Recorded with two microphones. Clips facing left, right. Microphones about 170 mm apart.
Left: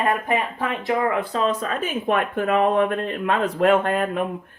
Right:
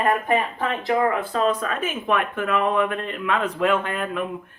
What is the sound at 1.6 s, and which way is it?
Speech, 35° left (ahead or behind).